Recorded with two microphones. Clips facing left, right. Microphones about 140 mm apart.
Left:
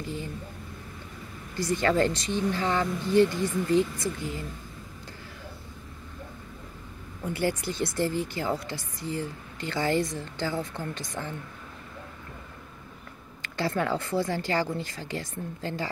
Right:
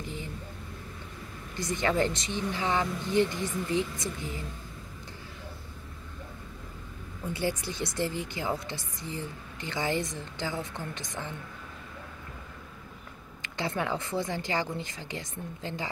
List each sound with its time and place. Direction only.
0.0 s a sound: 20° right (ahead or behind)
1.6 s speech: 20° right (ahead or behind)
7.3 s speech: 55° left (ahead or behind)
7.7 s speech: 20° right (ahead or behind)
13.4 s speech: 20° right (ahead or behind)